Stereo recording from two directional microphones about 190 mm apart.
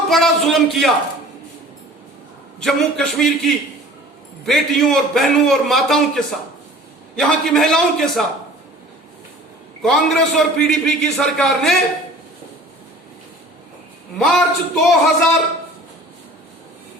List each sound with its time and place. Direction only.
0.1 s a man's voice: centre (ahead or behind)
2.6 s a man's voice: centre (ahead or behind)
9.8 s a man's voice: centre (ahead or behind)
14.2 s a man's voice: centre (ahead or behind)